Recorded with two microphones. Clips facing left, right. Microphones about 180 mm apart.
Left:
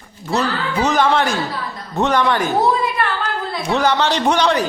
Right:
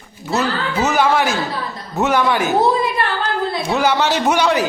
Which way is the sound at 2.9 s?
35° right (ahead or behind).